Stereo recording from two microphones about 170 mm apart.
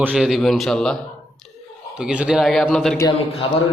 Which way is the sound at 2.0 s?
5° right (ahead or behind).